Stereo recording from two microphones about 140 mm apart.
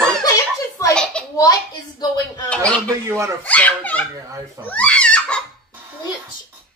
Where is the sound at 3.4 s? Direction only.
10° left (ahead or behind).